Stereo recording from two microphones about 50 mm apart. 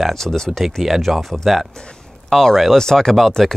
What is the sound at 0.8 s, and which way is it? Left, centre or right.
Speech, centre.